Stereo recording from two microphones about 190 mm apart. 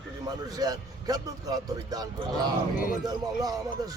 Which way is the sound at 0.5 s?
20° right (ahead or behind).